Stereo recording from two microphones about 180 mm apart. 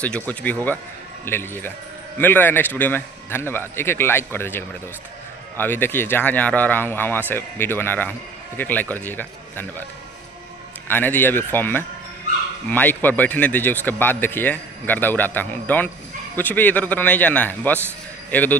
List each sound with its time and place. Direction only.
0.0 s speech: 5° left (ahead or behind)
10.9 s speech: 10° left (ahead or behind)